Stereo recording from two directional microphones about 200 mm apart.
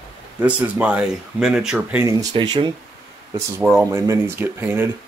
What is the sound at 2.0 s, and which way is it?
Speech, 20° right (ahead or behind).